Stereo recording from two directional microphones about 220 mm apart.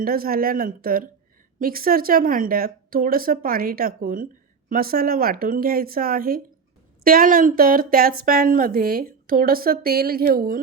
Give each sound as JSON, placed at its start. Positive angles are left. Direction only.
{"t": 0.0, "sound": "speech", "side_deg": -40}